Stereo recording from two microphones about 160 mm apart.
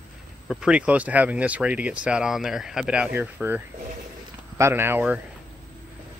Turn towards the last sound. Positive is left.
turn(degrees=-10)  # may be behind; listen again after turning